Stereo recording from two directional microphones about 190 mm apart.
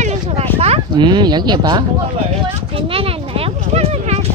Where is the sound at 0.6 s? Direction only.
30° right (ahead or behind).